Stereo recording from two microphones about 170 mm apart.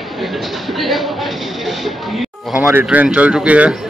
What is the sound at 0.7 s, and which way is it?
Speech, centre (ahead or behind).